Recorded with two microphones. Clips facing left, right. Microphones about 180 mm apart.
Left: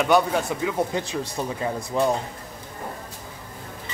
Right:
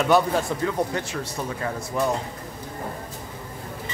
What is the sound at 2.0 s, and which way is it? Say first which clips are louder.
Speech: left 2 dB; 25° left (ahead or behind).